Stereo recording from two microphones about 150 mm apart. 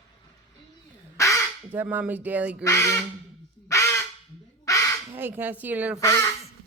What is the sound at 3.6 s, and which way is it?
Honk, 20° left (ahead or behind).